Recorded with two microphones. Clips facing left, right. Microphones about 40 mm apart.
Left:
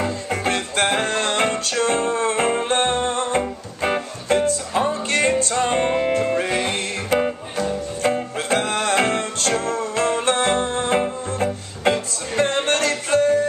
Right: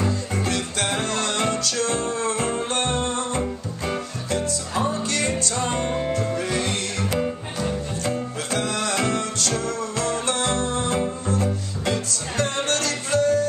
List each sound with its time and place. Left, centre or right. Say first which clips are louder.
0.0 s music: left 2 dB; left